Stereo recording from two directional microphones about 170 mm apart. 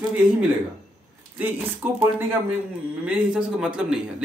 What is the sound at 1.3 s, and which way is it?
A man's voice, 10° right (ahead or behind).